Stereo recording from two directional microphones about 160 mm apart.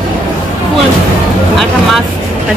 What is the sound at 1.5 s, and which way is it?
Speech, centre (ahead or behind).